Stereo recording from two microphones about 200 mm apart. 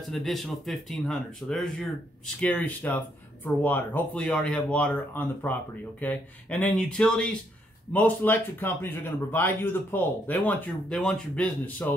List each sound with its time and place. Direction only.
0.1 s speech: centre (ahead or behind)